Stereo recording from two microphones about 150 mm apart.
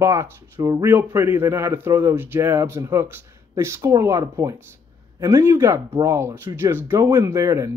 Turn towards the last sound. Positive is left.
turn(degrees=-20)  # may be behind; listen again after turning